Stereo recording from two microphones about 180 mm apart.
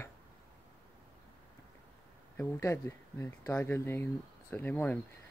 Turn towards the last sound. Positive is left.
turn(degrees=10)  # may be behind; listen again after turning